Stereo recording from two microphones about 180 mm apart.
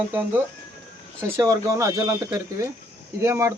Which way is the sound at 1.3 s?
15° right (ahead or behind).